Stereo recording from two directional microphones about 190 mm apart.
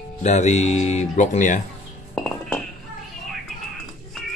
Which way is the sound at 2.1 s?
5° left (ahead or behind).